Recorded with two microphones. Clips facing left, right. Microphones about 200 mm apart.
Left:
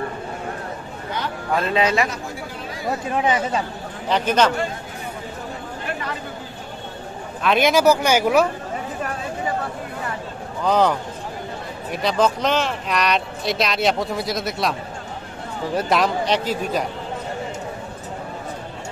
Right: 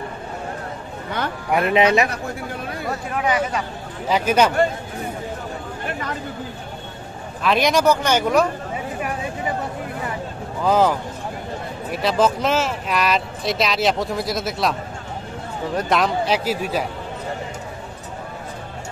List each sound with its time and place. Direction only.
1.5 s speech: 15° right (ahead or behind)
2.0 s speech: 55° right (ahead or behind)
3.1 s speech: 25° left (ahead or behind)
4.1 s speech: 10° right (ahead or behind)
7.4 s speech: centre (ahead or behind)
10.6 s speech: 5° right (ahead or behind)